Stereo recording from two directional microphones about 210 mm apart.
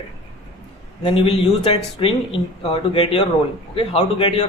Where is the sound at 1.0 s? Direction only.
25° left (ahead or behind).